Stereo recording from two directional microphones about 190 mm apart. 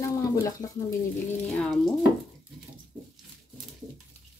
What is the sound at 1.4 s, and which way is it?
Speech, 5° left (ahead or behind).